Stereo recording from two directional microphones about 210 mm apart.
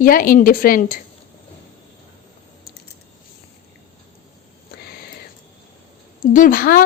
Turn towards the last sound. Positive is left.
turn(degrees=40)  # may be behind; listen again after turning